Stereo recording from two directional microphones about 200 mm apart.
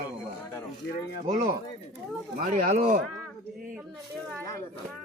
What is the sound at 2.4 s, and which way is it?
Speech, 40° right (ahead or behind).